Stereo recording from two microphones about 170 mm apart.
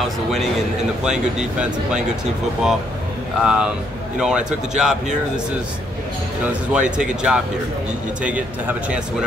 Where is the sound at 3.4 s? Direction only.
5° right (ahead or behind).